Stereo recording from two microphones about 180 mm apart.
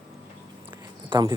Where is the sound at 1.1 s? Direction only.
25° right (ahead or behind).